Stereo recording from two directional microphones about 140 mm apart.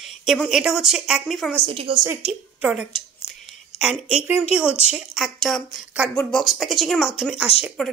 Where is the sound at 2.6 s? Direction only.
5° right (ahead or behind).